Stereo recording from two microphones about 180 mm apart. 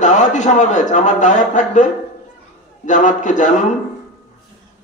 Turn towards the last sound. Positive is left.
turn(degrees=45)  # may be behind; listen again after turning